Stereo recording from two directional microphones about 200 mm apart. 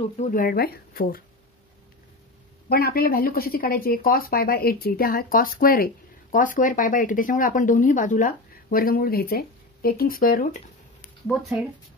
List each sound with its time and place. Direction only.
0.2 s speech: 45° left (ahead or behind)
2.7 s speech: 50° left (ahead or behind)
11.2 s speech: centre (ahead or behind)